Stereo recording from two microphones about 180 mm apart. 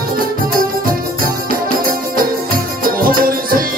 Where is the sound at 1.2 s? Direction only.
50° right (ahead or behind).